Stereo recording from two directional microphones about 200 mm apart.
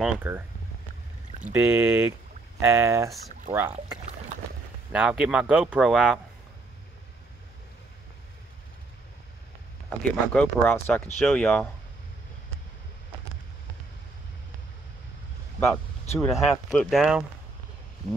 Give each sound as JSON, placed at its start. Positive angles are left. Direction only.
{"t": 0.0, "sound": "speech", "side_deg": -10}
{"t": 1.4, "sound": "speech", "side_deg": -10}
{"t": 3.5, "sound": "speech", "side_deg": -25}
{"t": 4.9, "sound": "speech", "side_deg": -5}
{"t": 9.8, "sound": "speech", "side_deg": 5}
{"t": 16.2, "sound": "speech", "side_deg": 0}